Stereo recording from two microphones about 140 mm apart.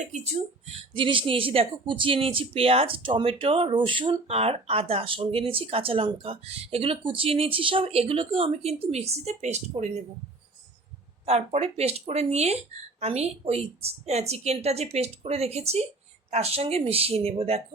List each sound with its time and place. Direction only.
0.0 s a woman's voice: 55° right (ahead or behind)
0.9 s speech: 35° right (ahead or behind); by 10.0 s 55° right (ahead or behind)
11.3 s a woman's voice: 50° right (ahead or behind)